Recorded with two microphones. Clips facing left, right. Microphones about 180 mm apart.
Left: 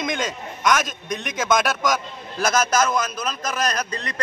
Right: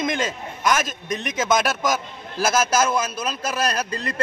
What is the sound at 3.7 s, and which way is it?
Speech, 30° right (ahead or behind).